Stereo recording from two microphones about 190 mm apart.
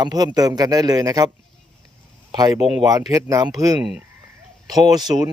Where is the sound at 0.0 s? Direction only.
20° right (ahead or behind).